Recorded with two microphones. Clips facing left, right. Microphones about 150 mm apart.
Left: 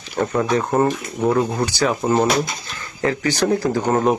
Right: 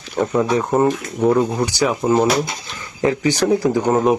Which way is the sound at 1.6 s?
15° right (ahead or behind).